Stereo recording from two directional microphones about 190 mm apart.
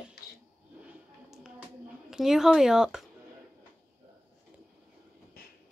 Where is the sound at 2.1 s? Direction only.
Centre (ahead or behind).